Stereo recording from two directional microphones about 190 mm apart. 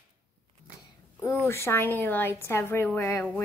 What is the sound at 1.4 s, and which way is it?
A woman's voice, 15° left (ahead or behind).